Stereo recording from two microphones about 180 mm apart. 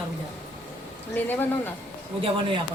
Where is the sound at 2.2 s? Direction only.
30° right (ahead or behind).